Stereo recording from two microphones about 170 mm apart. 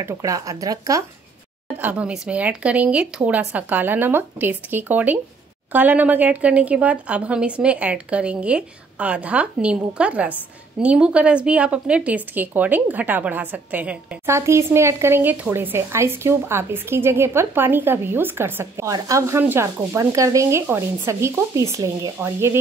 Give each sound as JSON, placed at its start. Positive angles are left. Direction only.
{"t": 0.0, "sound": "speech", "side_deg": -20}
{"t": 1.8, "sound": "a woman's voice", "side_deg": -10}